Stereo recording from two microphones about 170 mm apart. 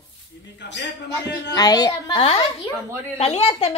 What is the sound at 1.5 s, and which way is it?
Speech, 20° left (ahead or behind).